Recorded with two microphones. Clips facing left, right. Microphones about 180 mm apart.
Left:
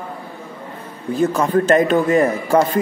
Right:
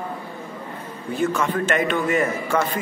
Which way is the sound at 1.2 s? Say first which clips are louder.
Left 6 dB; 35° left (ahead or behind).